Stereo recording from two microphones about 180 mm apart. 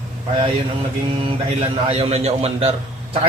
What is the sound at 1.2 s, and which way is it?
A man's voice, 30° right (ahead or behind).